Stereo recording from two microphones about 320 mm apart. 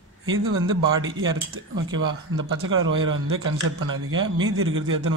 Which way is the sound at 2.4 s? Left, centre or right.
Right.